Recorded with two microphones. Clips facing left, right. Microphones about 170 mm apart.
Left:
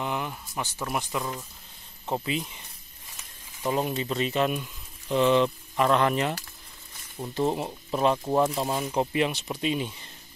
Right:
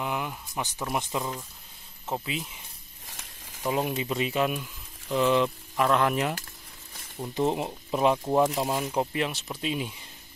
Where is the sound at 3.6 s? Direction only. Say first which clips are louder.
Left 1 dB; 10° right (ahead or behind).